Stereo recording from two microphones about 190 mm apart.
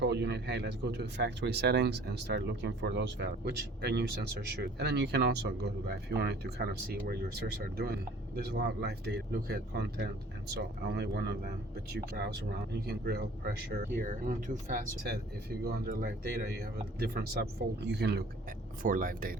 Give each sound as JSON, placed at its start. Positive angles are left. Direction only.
{"t": 0.0, "sound": "speech", "side_deg": -65}
{"t": 14.0, "sound": "speech", "side_deg": -45}
{"t": 18.8, "sound": "speech", "side_deg": -45}